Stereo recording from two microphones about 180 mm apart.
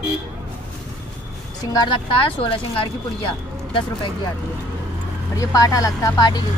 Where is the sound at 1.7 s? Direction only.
25° left (ahead or behind).